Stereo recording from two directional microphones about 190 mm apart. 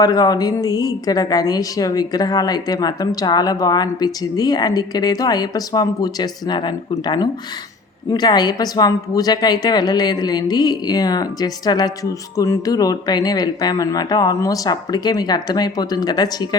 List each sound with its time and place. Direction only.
0.0 s a woman's voice: 20° left (ahead or behind)